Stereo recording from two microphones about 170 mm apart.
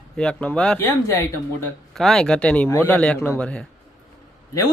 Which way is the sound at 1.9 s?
Centre (ahead or behind).